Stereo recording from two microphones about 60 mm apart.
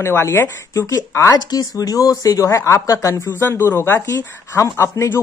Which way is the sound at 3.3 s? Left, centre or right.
Left.